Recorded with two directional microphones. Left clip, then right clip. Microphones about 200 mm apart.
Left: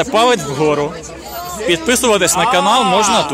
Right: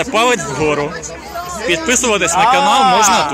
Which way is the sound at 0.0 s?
15° left (ahead or behind).